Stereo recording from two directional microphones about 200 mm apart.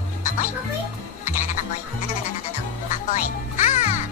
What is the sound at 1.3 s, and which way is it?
Music, 40° left (ahead or behind).